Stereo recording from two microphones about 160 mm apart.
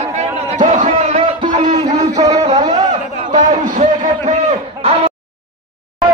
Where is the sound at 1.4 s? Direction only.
25° right (ahead or behind).